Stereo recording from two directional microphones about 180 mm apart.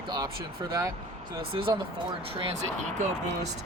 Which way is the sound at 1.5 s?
30° right (ahead or behind).